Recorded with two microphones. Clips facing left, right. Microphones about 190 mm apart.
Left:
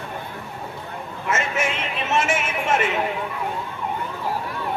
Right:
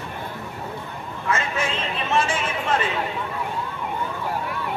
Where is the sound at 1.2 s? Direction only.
20° left (ahead or behind).